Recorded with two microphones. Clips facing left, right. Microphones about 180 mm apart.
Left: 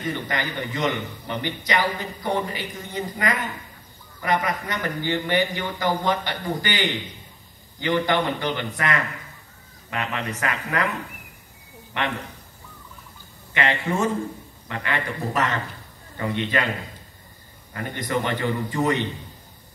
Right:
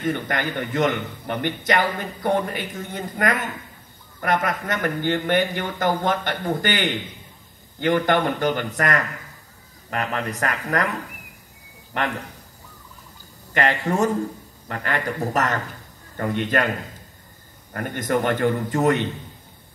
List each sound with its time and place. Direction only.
0.0 s a man's voice: 50° right (ahead or behind)
11.9 s speech: 40° right (ahead or behind)
13.5 s a man's voice: 40° right (ahead or behind)
17.7 s a man's voice: 50° right (ahead or behind)